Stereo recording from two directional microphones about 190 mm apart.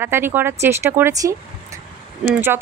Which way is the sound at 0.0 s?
10° right (ahead or behind).